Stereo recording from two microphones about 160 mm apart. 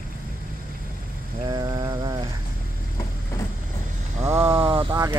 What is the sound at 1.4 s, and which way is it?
Mantra, 25° right (ahead or behind).